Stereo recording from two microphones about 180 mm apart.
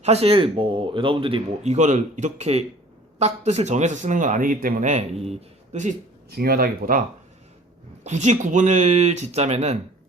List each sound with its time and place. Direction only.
0.0 s speech: 35° right (ahead or behind)
6.3 s speech: 55° right (ahead or behind)
8.0 s speech: 40° right (ahead or behind)